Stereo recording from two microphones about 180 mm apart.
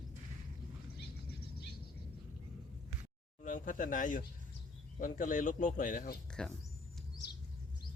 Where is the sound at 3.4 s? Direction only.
45° left (ahead or behind).